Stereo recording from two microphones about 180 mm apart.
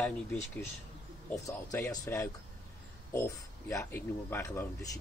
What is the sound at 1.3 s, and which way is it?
Speech, 20° left (ahead or behind).